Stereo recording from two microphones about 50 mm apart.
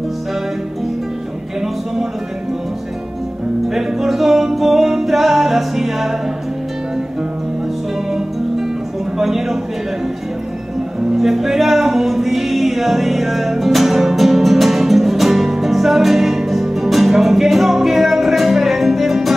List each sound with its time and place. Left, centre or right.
3.6 s music: centre
9.2 s a sound: centre
11.1 s music: centre